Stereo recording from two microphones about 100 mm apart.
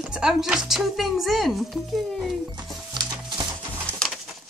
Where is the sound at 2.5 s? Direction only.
45° right (ahead or behind).